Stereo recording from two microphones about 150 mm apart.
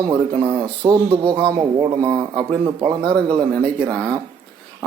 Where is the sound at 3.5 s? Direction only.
5° left (ahead or behind).